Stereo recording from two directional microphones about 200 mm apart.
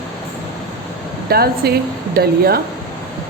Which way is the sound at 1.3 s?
50° right (ahead or behind).